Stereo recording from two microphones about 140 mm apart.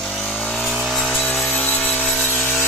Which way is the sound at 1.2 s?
5° left (ahead or behind).